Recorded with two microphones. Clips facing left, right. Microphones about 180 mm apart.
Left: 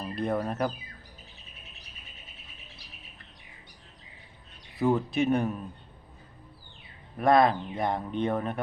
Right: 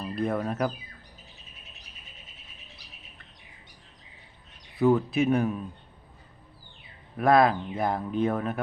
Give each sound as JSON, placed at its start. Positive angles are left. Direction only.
{"t": 0.2, "sound": "speech", "side_deg": 0}
{"t": 4.8, "sound": "speech", "side_deg": 0}
{"t": 7.2, "sound": "speech", "side_deg": 0}